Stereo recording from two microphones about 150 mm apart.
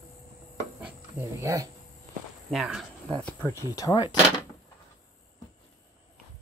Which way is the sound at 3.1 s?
10° left (ahead or behind).